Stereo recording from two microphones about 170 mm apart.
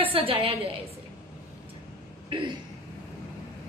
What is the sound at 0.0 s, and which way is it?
Speech, 35° right (ahead or behind).